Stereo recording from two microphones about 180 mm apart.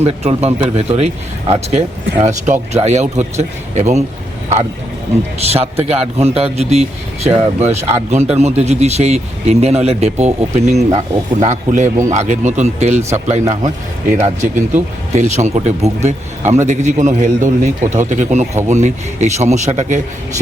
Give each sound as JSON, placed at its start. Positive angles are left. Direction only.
{"t": 0.0, "sound": "a man's voice", "side_deg": -35}
{"t": 5.4, "sound": "a man's voice", "side_deg": -35}